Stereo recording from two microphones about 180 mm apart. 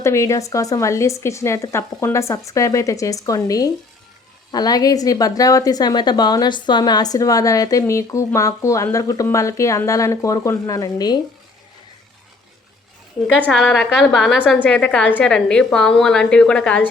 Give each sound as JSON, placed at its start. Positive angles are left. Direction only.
{"t": 0.0, "sound": "a woman's voice", "side_deg": 15}
{"t": 13.5, "sound": "a woman's voice", "side_deg": 0}